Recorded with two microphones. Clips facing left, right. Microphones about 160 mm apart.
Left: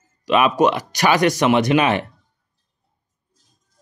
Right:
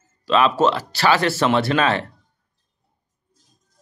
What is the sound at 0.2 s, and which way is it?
Speech, 15° left (ahead or behind).